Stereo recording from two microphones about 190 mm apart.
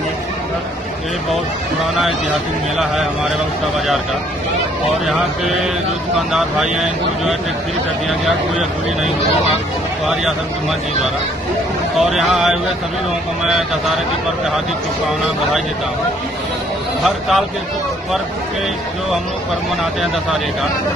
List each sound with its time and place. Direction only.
5.0 s speech: centre (ahead or behind)
12.0 s speech: centre (ahead or behind)
17.0 s speech: centre (ahead or behind)